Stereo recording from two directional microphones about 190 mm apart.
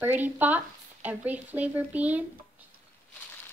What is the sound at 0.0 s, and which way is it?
Speech, 10° right (ahead or behind).